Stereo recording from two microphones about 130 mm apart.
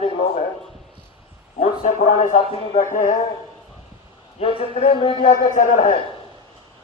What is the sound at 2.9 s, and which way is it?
Speech, 70° left (ahead or behind).